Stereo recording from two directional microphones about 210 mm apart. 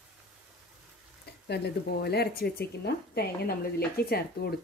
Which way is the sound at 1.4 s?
50° left (ahead or behind).